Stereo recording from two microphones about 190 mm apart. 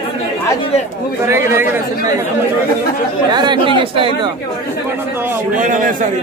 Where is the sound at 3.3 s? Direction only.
25° right (ahead or behind).